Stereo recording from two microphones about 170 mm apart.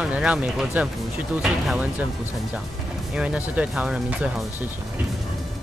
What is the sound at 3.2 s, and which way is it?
Speech, 5° right (ahead or behind).